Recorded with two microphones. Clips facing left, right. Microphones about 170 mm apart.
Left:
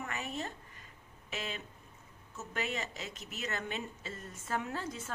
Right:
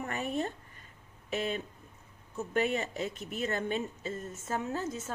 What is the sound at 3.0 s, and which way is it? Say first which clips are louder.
Speech: right 8 dB; 55° right (ahead or behind).